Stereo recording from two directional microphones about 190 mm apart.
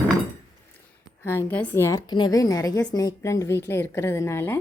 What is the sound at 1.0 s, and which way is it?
A woman's voice, 15° left (ahead or behind).